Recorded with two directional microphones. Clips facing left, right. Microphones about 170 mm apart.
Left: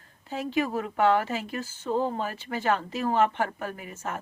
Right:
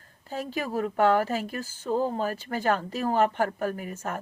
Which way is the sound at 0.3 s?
40° right (ahead or behind).